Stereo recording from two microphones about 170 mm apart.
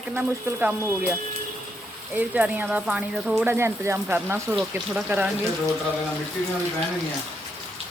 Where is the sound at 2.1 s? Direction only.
10° right (ahead or behind).